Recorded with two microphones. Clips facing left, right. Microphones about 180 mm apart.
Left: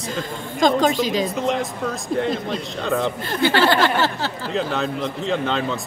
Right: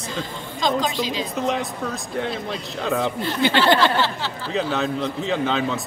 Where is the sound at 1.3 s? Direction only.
Centre (ahead or behind).